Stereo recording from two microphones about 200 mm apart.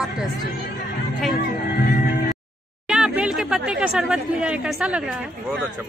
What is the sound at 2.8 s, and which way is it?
Speech, 5° right (ahead or behind).